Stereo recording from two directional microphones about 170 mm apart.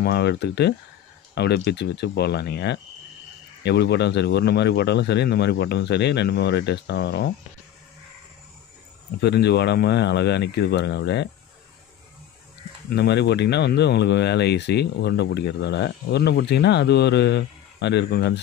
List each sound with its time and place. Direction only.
0.0 s speech: 80° left
9.2 s speech: 80° left
12.9 s speech: 80° left